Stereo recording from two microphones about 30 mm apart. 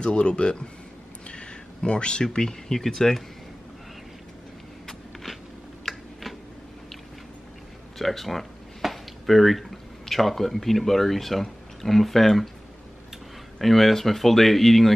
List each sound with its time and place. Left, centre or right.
0.0 s speech: left
1.2 s a sound: left
1.8 s speech: left
2.3 s speech: centre
5.9 s typing: centre
8.0 s speech: centre
13.6 s speech: centre